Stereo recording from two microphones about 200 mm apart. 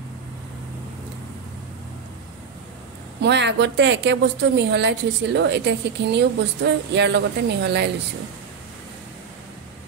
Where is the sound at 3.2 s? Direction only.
60° right (ahead or behind).